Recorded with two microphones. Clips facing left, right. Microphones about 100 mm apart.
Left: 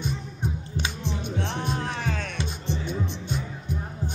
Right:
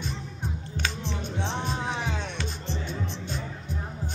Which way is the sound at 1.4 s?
20° right (ahead or behind).